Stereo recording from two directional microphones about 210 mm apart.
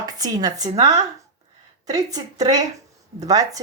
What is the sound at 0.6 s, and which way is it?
Speech, 30° right (ahead or behind).